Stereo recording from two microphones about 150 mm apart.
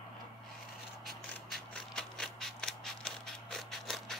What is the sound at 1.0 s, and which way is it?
Mechanisms, 5° left (ahead or behind).